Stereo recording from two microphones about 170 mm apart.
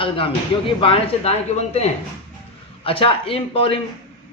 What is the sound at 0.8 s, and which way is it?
A man's voice, 35° left (ahead or behind).